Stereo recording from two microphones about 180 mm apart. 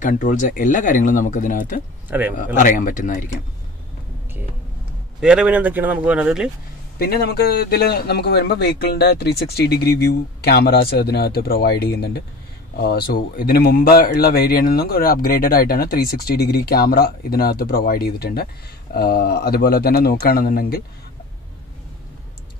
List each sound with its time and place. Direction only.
0.0 s speech: 45° left (ahead or behind)
2.0 s speech: 10° right (ahead or behind)
2.3 s speech: 45° left (ahead or behind)
5.2 s speech: 5° right (ahead or behind)
7.0 s speech: 60° left (ahead or behind)